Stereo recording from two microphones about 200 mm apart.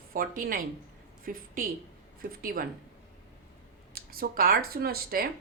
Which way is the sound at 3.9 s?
50° right (ahead or behind).